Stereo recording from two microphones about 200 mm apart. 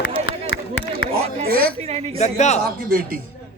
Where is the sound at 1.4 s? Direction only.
50° right (ahead or behind).